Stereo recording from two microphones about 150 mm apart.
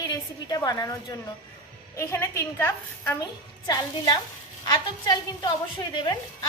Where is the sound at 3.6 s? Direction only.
30° left (ahead or behind).